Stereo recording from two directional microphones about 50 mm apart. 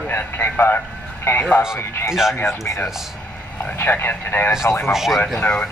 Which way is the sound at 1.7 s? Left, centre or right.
Left.